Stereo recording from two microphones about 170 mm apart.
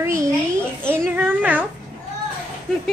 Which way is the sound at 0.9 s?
10° right (ahead or behind).